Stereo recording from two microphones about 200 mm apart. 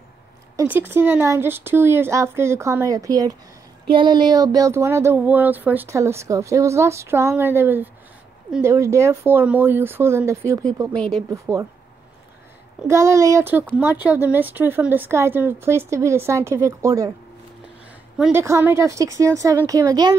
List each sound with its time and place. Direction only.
0.6 s speech: 10° right (ahead or behind)
12.8 s speech: 15° right (ahead or behind)
18.1 s a woman's voice: 5° right (ahead or behind); by 20.2 s 20° right (ahead or behind)